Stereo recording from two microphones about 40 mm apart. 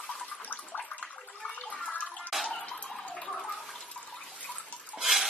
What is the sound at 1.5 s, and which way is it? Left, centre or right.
Bathtub, left.